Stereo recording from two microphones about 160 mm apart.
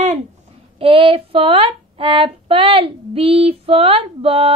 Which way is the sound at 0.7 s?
35° right (ahead or behind).